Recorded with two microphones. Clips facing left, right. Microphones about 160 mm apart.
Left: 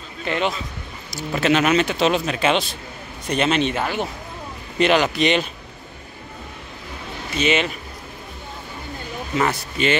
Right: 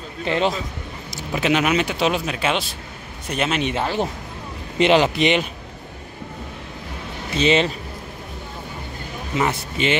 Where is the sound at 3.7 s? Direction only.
30° right (ahead or behind).